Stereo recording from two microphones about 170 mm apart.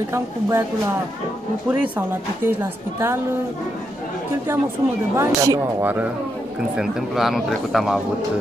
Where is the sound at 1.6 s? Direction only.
10° right (ahead or behind).